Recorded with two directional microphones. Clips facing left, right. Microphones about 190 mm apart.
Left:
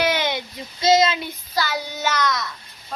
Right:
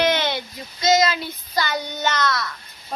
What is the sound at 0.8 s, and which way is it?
Child singing, 30° left (ahead or behind).